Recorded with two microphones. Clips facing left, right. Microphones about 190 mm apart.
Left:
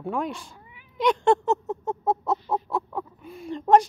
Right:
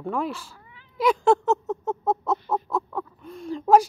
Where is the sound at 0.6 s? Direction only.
15° left (ahead or behind).